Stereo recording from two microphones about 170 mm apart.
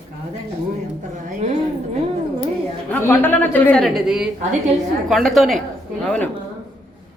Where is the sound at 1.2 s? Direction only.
40° right (ahead or behind).